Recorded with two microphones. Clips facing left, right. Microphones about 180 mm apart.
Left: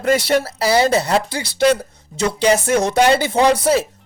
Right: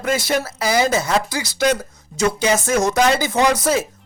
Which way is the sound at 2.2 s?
35° left (ahead or behind).